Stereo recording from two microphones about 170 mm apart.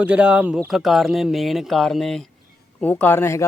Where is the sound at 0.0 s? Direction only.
10° right (ahead or behind).